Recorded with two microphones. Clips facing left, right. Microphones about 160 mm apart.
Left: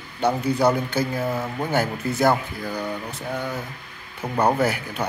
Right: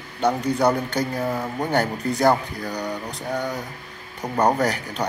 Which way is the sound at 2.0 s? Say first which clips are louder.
Right 1 dB; 5° left (ahead or behind).